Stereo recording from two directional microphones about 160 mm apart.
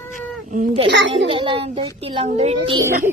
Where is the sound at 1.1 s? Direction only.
35° right (ahead or behind).